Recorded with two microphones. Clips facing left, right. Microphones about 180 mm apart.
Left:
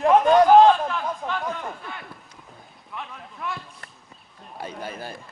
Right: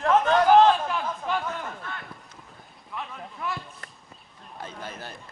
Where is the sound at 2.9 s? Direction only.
Centre (ahead or behind).